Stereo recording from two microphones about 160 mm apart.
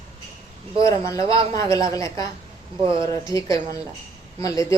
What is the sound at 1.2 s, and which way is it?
Speech, 35° right (ahead or behind).